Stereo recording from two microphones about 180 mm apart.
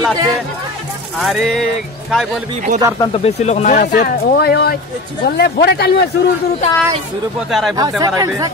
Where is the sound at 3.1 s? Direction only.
35° left (ahead or behind).